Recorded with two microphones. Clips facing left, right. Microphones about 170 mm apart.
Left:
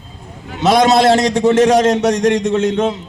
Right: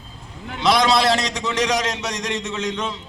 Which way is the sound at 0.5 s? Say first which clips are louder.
Left 6 dB; 45° left (ahead or behind).